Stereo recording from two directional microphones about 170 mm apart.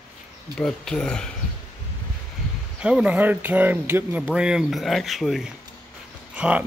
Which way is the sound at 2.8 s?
5° right (ahead or behind).